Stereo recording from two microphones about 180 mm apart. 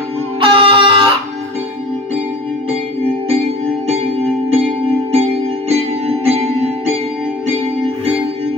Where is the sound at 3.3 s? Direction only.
35° right (ahead or behind).